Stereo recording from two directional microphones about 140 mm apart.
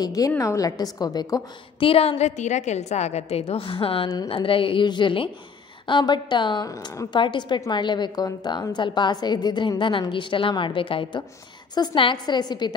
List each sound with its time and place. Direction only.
0.0 s a woman's voice: 25° left (ahead or behind)
1.9 s a woman's voice: 45° left (ahead or behind)
6.7 s a woman's voice: 25° left (ahead or behind)
7.2 s a woman's voice: 35° left (ahead or behind)